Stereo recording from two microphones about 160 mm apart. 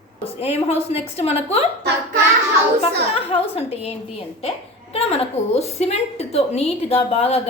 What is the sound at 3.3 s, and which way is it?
A woman's voice, 40° left (ahead or behind).